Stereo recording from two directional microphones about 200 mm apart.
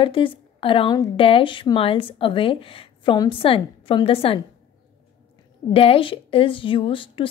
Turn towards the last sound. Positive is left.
turn(degrees=25)  # may be behind; listen again after turning